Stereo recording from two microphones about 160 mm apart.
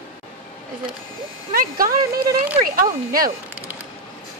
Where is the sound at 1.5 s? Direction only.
65° right (ahead or behind).